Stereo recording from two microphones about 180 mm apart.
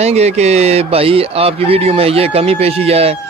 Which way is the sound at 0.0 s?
35° right (ahead or behind).